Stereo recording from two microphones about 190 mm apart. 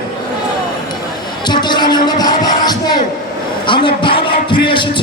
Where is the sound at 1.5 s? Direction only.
25° left (ahead or behind).